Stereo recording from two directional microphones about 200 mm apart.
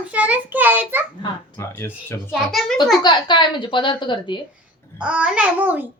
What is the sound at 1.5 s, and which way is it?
Speech, 10° left (ahead or behind).